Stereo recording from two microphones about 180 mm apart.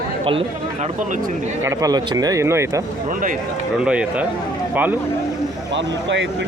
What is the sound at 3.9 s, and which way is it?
Speech, 5° right (ahead or behind).